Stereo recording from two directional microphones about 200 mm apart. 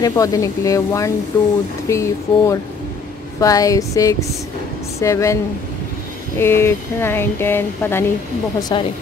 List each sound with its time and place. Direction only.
0.0 s speech: 15° left (ahead or behind)